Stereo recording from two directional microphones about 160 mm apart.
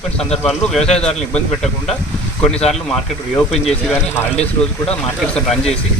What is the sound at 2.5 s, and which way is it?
Speech, 40° left (ahead or behind).